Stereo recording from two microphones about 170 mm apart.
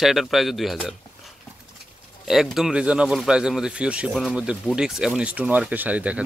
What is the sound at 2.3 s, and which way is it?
Speech, centre (ahead or behind).